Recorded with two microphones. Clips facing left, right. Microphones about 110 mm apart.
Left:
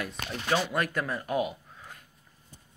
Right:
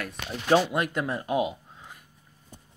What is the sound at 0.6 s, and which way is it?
Speech, 20° right (ahead or behind).